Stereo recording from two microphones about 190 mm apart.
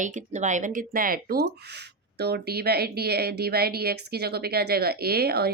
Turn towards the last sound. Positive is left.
turn(degrees=-55)  # may be behind; listen again after turning